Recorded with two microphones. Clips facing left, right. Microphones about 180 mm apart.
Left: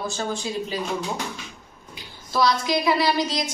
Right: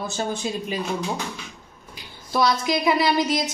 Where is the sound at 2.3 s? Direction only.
20° right (ahead or behind).